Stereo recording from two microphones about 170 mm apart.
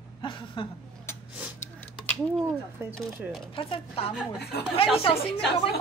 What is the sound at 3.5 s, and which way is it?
Speech, 30° left (ahead or behind).